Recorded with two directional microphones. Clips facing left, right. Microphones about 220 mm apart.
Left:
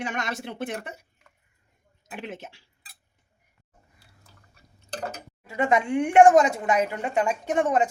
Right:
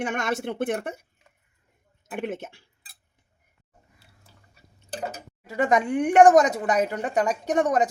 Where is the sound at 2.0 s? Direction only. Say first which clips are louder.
Right 6 dB; 50° right (ahead or behind).